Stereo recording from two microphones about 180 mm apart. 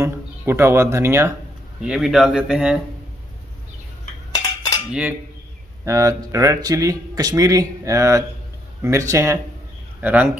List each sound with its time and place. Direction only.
0.0 s speech: 15° right (ahead or behind)
1.8 s speech: 5° right (ahead or behind)
4.3 s cutlery: 20° left (ahead or behind)
5.9 s speech: 15° right (ahead or behind)